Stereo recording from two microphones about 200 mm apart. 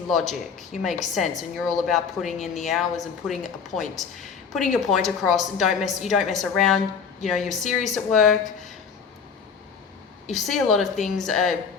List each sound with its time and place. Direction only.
0.1 s a woman's voice: centre (ahead or behind)
10.2 s a woman's voice: centre (ahead or behind)